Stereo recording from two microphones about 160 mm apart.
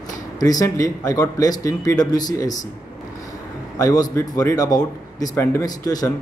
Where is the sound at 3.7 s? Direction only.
20° left (ahead or behind).